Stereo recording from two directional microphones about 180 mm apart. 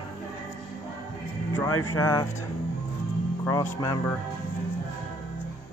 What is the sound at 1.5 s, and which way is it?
Speech, 20° left (ahead or behind).